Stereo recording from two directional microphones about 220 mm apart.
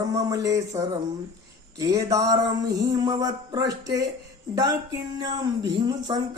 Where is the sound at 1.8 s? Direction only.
15° right (ahead or behind).